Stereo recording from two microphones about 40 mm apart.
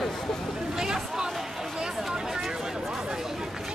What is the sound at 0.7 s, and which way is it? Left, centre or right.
Speech, centre.